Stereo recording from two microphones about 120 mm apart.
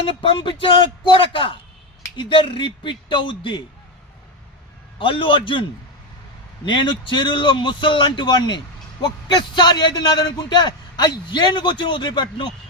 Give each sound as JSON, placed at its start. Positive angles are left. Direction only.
{"t": 0.0, "sound": "speech", "side_deg": 45}
{"t": 4.9, "sound": "speech", "side_deg": 45}
{"t": 6.7, "sound": "a man's voice", "side_deg": 40}